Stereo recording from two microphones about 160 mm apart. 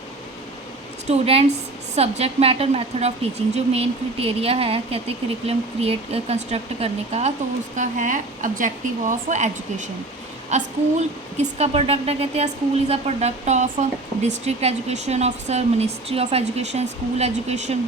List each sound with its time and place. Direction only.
1.0 s speech: 40° right (ahead or behind)